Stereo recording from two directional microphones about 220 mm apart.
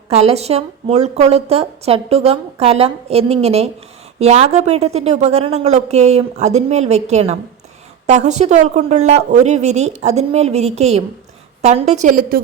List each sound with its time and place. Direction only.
0.1 s a woman's voice: 30° right (ahead or behind)